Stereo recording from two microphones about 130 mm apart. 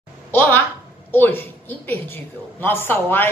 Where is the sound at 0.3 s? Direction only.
15° left (ahead or behind).